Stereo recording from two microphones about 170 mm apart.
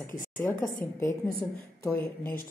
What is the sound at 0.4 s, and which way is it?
Speech, 10° left (ahead or behind).